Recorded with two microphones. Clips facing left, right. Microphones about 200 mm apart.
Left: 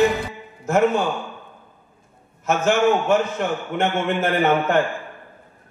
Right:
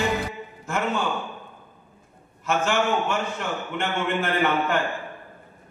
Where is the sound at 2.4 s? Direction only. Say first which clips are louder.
Left 5 dB; 40° left (ahead or behind).